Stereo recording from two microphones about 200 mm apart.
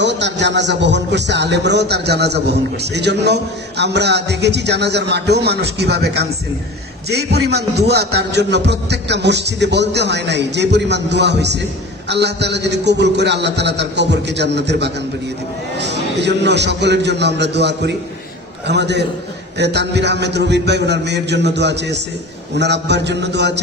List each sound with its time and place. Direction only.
0.0 s a man's voice: 60° right (ahead or behind)